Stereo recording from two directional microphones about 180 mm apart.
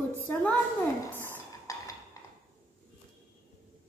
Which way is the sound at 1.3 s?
20° left (ahead or behind).